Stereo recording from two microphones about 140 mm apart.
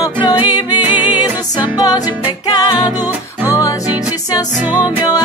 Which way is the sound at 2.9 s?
15° right (ahead or behind).